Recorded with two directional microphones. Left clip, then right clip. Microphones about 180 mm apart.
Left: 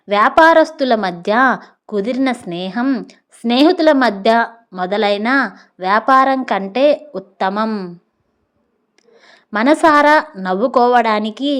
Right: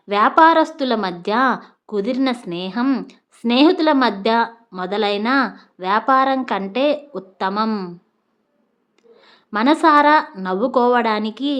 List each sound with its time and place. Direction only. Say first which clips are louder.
0.1 s a woman's voice: left 3 dB; 20° left (ahead or behind)
7.7 s a woman's voice: left 1 dB; 15° left (ahead or behind)
9.1 s a woman's voice: left 3 dB; 25° left (ahead or behind)